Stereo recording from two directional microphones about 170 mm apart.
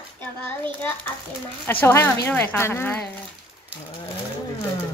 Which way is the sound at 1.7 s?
10° left (ahead or behind).